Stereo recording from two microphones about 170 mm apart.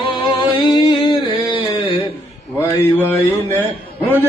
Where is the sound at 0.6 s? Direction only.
25° left (ahead or behind).